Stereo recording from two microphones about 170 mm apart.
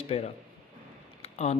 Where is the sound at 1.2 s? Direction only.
40° left (ahead or behind).